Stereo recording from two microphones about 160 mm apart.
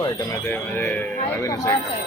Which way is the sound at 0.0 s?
15° left (ahead or behind).